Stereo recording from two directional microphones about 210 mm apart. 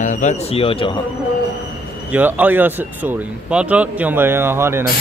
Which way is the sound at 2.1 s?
10° right (ahead or behind).